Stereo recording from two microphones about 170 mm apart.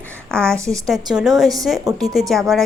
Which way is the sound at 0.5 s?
20° right (ahead or behind).